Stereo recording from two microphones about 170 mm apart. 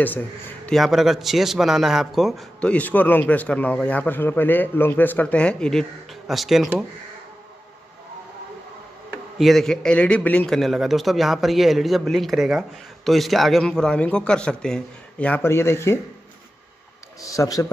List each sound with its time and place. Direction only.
0.7 s a man's voice: centre (ahead or behind)
9.4 s a man's voice: centre (ahead or behind)
17.2 s speech: 20° left (ahead or behind)